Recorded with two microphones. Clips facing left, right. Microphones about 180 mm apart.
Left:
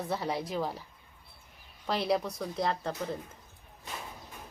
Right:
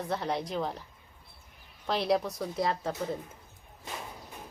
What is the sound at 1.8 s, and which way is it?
A woman's voice, centre (ahead or behind).